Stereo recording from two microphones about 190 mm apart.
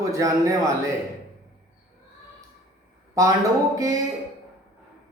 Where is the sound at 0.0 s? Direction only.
15° right (ahead or behind).